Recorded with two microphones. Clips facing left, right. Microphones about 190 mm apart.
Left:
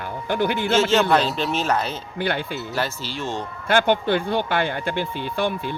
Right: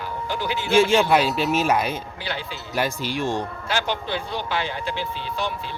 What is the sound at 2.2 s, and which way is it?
Speech, 55° left (ahead or behind).